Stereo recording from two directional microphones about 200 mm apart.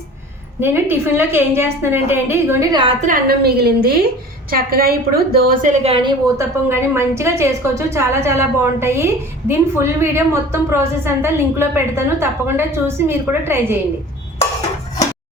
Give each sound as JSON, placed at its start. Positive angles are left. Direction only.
{"t": 0.6, "sound": "a woman's voice", "side_deg": -10}
{"t": 3.1, "sound": "a woman's voice", "side_deg": -50}